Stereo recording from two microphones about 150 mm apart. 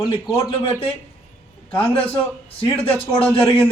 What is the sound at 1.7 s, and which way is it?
Speech, 35° left (ahead or behind).